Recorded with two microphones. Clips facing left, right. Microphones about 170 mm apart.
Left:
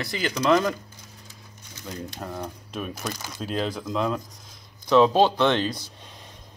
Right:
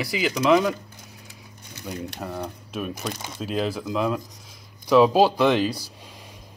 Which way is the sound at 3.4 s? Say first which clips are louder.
Right 2 dB; 5° right (ahead or behind).